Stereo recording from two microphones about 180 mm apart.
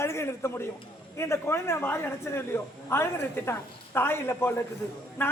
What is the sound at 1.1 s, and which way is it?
A woman's voice, 15° left (ahead or behind).